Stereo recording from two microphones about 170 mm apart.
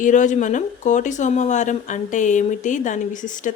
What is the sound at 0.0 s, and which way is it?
Speech, 50° left (ahead or behind).